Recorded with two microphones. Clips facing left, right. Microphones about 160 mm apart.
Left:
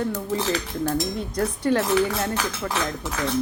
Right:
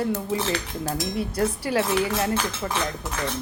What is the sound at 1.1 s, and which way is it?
A woman's voice, 5° right (ahead or behind).